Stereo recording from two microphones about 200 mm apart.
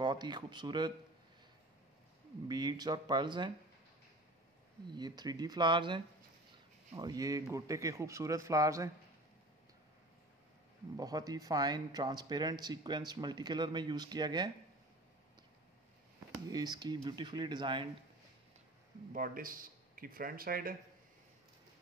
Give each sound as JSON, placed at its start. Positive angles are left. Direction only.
{"t": 0.0, "sound": "speech", "side_deg": -20}
{"t": 2.4, "sound": "speech", "side_deg": -20}
{"t": 4.9, "sound": "speech", "side_deg": -20}
{"t": 11.0, "sound": "speech", "side_deg": -20}
{"t": 16.4, "sound": "speech", "side_deg": -20}
{"t": 19.1, "sound": "a man's voice", "side_deg": -45}